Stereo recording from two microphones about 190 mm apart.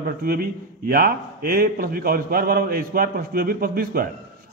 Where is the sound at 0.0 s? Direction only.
50° right (ahead or behind).